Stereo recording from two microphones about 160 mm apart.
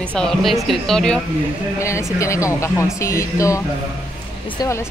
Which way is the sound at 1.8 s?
20° left (ahead or behind).